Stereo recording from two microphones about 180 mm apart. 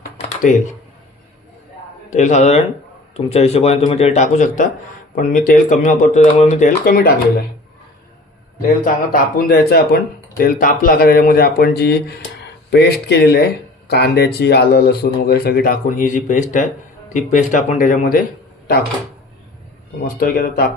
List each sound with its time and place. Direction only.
2.0 s speech: 40° left (ahead or behind)
8.8 s speech: 55° left (ahead or behind)
20.1 s speech: 55° left (ahead or behind)